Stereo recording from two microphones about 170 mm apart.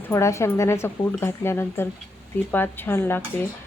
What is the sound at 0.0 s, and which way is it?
Speech, 15° left (ahead or behind).